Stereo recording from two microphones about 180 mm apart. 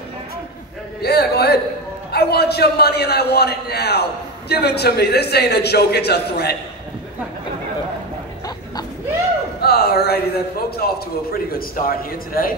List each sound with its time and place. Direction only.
1.0 s a man's voice: 60° left (ahead or behind)
9.6 s a man's voice: 60° left (ahead or behind)